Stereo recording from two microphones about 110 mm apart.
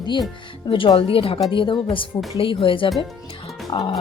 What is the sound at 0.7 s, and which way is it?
Speech, 50° left (ahead or behind).